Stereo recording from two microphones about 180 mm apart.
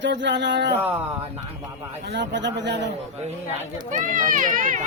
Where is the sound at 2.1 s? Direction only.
80° right.